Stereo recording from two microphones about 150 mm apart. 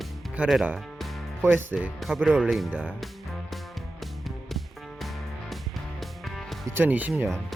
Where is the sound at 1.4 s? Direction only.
15° right (ahead or behind).